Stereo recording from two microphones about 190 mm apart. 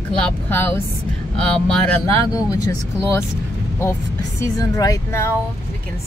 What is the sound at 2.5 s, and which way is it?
Speech, 15° left (ahead or behind).